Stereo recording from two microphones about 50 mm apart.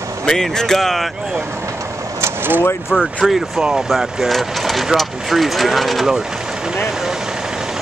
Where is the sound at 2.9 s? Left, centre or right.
Centre.